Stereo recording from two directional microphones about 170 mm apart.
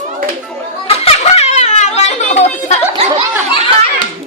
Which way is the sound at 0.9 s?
35° left (ahead or behind).